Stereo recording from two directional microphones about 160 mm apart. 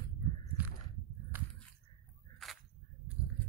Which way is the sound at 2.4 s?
Centre (ahead or behind).